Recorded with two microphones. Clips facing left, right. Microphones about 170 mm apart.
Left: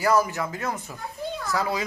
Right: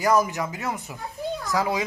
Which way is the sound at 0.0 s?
15° right (ahead or behind).